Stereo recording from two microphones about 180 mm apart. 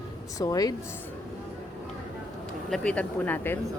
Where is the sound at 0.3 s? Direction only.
20° left (ahead or behind).